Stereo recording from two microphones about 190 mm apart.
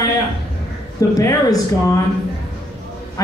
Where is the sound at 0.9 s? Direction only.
20° left (ahead or behind).